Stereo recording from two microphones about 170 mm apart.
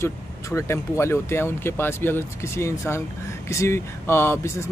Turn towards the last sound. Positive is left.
turn(degrees=15)  # may be behind; listen again after turning